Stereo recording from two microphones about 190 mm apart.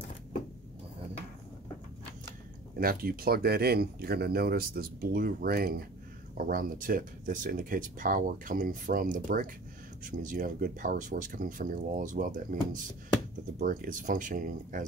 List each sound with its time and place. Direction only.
2.8 s speech: 50° right (ahead or behind)